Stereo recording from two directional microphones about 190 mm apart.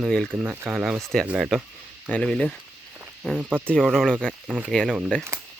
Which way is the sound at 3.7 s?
5° left (ahead or behind).